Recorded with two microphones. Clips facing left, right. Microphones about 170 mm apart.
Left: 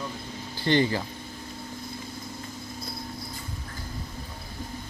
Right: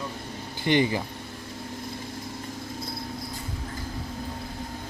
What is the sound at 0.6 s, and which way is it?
Speech, 15° right (ahead or behind).